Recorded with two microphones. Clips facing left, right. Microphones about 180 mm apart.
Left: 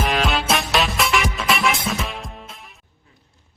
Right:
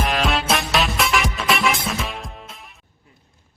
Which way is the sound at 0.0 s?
Centre (ahead or behind).